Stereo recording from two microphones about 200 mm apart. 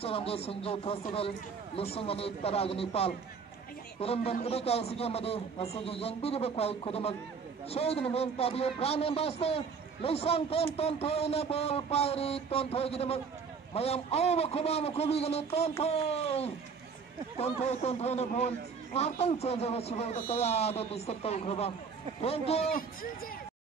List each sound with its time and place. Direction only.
0.0 s a man's voice: 30° left (ahead or behind)